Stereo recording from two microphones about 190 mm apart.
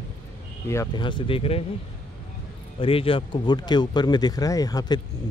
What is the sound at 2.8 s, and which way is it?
A man's voice, 30° left (ahead or behind).